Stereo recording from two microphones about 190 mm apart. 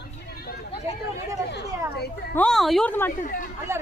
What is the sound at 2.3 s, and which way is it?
Speech, 5° left (ahead or behind).